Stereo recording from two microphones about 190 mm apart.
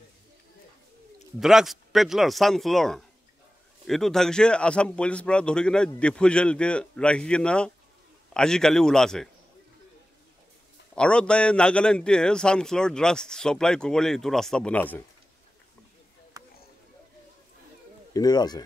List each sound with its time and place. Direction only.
1.4 s a man's voice: centre (ahead or behind)
11.0 s a man's voice: 5° left (ahead or behind)
16.3 s a sound: 20° right (ahead or behind)
18.1 s speech: 20° left (ahead or behind)